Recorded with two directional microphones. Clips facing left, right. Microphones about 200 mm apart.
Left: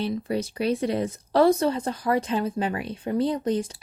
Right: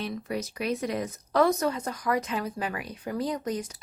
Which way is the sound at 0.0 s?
30° left (ahead or behind).